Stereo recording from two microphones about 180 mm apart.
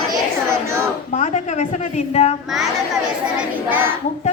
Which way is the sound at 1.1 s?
40° left (ahead or behind).